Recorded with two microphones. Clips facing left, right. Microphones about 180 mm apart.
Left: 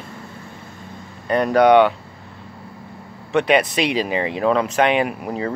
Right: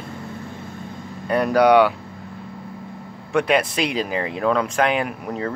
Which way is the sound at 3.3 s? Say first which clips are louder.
Left 2 dB; centre (ahead or behind).